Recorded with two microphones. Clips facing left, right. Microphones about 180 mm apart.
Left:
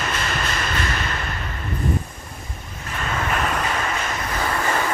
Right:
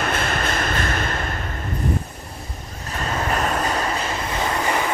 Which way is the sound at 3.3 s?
35° right (ahead or behind).